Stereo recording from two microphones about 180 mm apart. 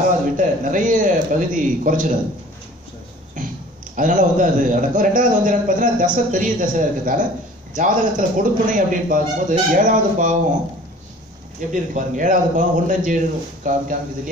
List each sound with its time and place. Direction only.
0.4 s a man's voice: 45° right (ahead or behind)
3.4 s a sound: 45° right (ahead or behind)
3.9 s a man's voice: 45° right (ahead or behind)
11.7 s a man's voice: 45° right (ahead or behind)